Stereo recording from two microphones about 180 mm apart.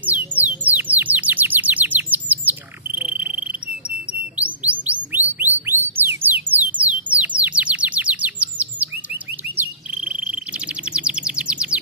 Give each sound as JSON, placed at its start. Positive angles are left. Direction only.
{"t": 0.0, "sound": "bird", "side_deg": -10}
{"t": 5.4, "sound": "a sound", "side_deg": -10}
{"t": 10.9, "sound": "bird", "side_deg": -5}